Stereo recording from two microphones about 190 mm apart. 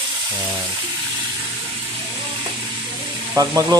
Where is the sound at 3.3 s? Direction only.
20° right (ahead or behind).